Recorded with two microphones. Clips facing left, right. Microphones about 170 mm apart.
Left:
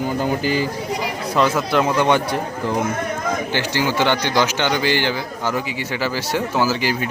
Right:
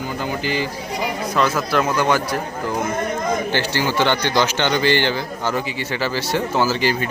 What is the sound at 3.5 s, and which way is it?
Speech, 15° left (ahead or behind).